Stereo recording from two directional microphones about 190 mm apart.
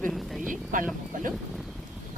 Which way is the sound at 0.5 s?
45° right (ahead or behind).